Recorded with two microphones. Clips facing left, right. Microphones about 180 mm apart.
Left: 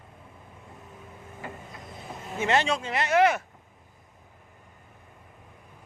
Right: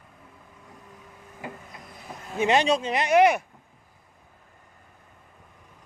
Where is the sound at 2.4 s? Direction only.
15° right (ahead or behind).